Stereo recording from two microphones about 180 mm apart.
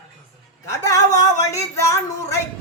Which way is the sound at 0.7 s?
20° left (ahead or behind).